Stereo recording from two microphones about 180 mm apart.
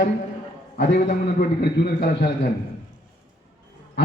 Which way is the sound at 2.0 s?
70° left (ahead or behind).